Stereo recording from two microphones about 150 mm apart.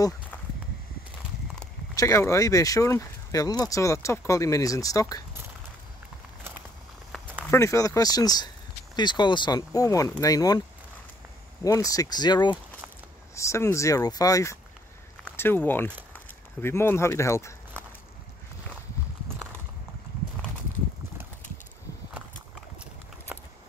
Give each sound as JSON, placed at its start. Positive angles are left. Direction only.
{"t": 2.0, "sound": "speech", "side_deg": 20}
{"t": 7.5, "sound": "speech", "side_deg": 20}
{"t": 11.6, "sound": "speech", "side_deg": 25}